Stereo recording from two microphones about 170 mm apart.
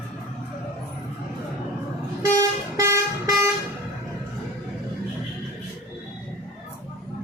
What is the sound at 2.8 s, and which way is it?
Vehicle, 15° right (ahead or behind).